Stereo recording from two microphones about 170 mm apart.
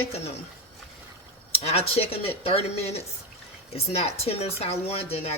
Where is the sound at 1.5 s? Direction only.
35° left (ahead or behind).